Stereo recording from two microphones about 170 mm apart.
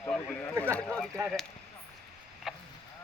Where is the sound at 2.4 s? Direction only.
Centre (ahead or behind).